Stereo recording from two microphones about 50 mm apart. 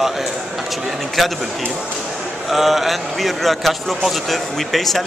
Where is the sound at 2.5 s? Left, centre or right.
Centre.